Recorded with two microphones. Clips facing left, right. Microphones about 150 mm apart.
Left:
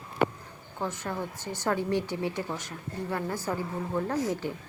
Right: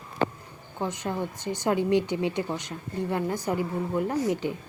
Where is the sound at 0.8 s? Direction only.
15° right (ahead or behind).